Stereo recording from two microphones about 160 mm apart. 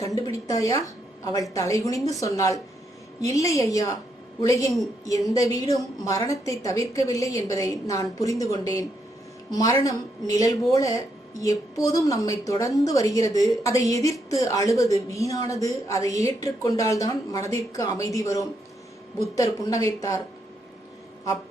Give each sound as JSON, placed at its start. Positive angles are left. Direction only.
{"t": 0.2, "sound": "a woman's voice", "side_deg": 20}